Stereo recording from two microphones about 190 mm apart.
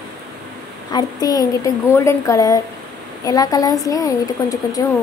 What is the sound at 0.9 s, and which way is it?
A woman's voice, 20° left (ahead or behind).